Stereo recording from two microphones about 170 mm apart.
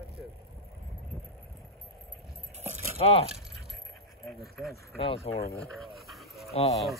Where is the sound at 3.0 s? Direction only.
35° left (ahead or behind).